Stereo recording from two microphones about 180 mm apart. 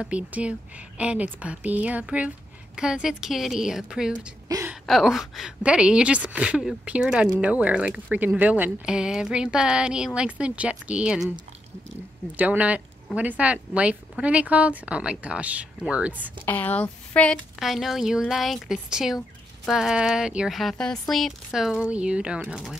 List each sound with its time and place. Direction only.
0.0 s a woman's voice: 5° right (ahead or behind)
4.5 s a sound: 15° right (ahead or behind)
4.8 s a woman's voice: centre (ahead or behind)
12.4 s a woman's voice: 5° right (ahead or behind)
16.4 s a woman's voice: 10° left (ahead or behind)